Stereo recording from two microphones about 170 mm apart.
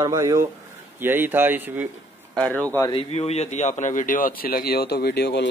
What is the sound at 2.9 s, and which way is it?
Speech, 35° left (ahead or behind).